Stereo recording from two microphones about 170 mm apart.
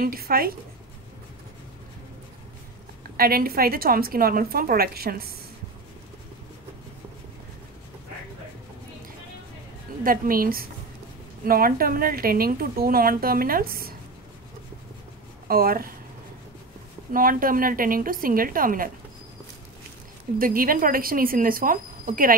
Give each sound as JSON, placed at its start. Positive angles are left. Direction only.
{"t": 0.0, "sound": "a woman's voice", "side_deg": -60}
{"t": 3.2, "sound": "a woman's voice", "side_deg": -60}
{"t": 10.0, "sound": "a woman's voice", "side_deg": -55}
{"t": 15.4, "sound": "speech", "side_deg": -60}
{"t": 17.1, "sound": "a woman's voice", "side_deg": -55}
{"t": 20.3, "sound": "a woman's voice", "side_deg": -55}